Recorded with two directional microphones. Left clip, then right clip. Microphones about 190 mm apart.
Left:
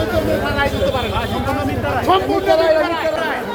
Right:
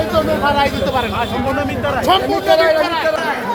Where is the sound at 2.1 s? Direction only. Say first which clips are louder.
Right 1 dB; 50° right (ahead or behind).